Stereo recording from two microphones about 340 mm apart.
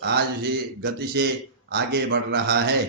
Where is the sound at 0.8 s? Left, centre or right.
Right.